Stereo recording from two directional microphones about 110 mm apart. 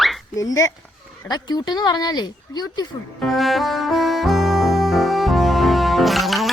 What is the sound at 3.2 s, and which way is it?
Music, centre (ahead or behind).